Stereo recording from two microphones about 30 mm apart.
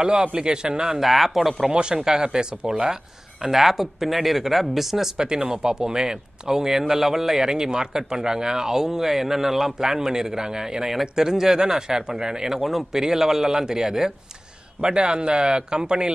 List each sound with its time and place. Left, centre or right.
0.0 s speech: right
1.0 s speech: centre
1.7 s speech: right
2.0 s speech: right
5.1 s speech: right; by 7.4 s centre
7.4 s speech: right
9.8 s speech: centre
14.8 s speech: right